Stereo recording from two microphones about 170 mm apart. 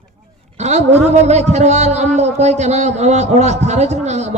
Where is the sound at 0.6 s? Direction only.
40° right (ahead or behind).